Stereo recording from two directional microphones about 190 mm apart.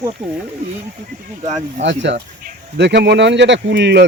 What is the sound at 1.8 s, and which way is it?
Speech, 70° right (ahead or behind).